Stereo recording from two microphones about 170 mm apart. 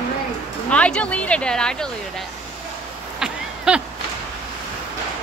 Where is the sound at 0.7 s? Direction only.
5° left (ahead or behind).